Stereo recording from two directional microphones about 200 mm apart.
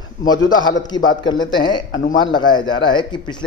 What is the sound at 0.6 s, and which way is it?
Speech, 20° left (ahead or behind).